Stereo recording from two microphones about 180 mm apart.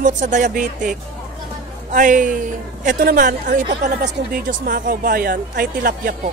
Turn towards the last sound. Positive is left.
turn(degrees=-50)  # may be behind; listen again after turning